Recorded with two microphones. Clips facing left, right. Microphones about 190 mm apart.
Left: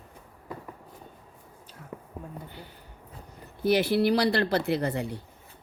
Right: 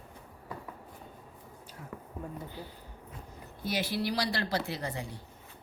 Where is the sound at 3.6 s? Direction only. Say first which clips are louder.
Left 10 dB; 60° left (ahead or behind).